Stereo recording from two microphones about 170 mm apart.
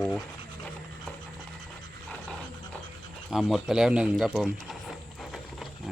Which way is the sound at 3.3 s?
Centre (ahead or behind).